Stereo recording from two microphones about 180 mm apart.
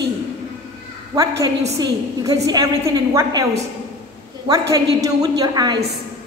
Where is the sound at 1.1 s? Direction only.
20° right (ahead or behind).